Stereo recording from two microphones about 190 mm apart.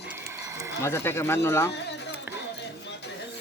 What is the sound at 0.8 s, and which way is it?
Speech, 15° left (ahead or behind).